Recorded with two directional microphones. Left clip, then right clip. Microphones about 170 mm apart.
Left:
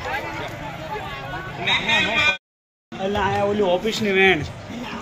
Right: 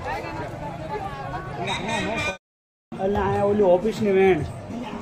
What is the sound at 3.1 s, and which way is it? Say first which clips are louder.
Speech: left 1 dB; 45° right (ahead or behind).